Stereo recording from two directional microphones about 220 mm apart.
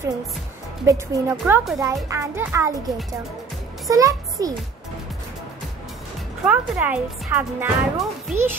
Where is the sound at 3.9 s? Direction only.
15° right (ahead or behind).